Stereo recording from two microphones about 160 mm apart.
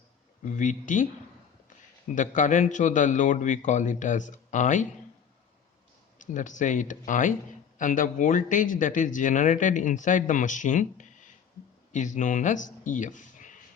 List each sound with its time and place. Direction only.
0.5 s speech: 55° left (ahead or behind)
2.1 s speech: 55° left (ahead or behind)
6.1 s speech: 50° left (ahead or behind)